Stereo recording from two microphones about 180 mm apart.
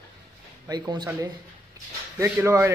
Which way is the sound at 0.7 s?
20° right (ahead or behind).